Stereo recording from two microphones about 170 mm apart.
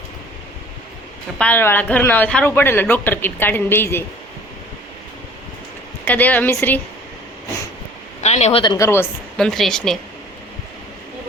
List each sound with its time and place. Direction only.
1.4 s speech: 10° left (ahead or behind)
6.1 s speech: 10° left (ahead or behind)
8.2 s a man's voice: 40° left (ahead or behind)
8.6 s a woman's voice: 25° left (ahead or behind)
9.4 s speech: centre (ahead or behind)